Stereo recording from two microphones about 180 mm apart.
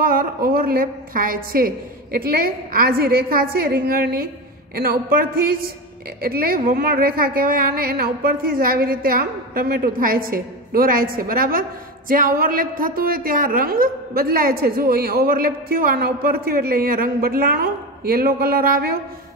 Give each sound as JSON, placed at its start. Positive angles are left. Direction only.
{"t": 0.0, "sound": "a woman's voice", "side_deg": -55}